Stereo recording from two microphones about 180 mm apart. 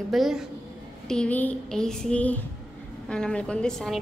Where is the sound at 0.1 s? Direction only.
Centre (ahead or behind).